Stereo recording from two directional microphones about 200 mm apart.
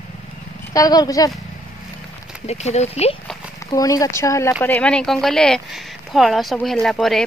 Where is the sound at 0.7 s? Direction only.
20° left (ahead or behind).